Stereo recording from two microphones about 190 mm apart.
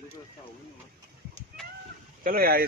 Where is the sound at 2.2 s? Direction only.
50° right (ahead or behind).